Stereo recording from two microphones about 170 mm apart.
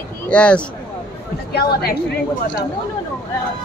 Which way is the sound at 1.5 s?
65° left (ahead or behind).